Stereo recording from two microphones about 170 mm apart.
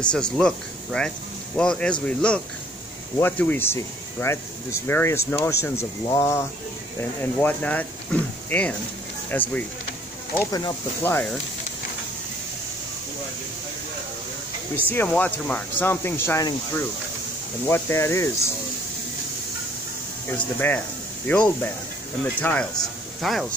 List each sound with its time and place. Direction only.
0.0 s speech: 5° left (ahead or behind)
14.9 s speech: 10° left (ahead or behind)
20.2 s speech: 10° left (ahead or behind)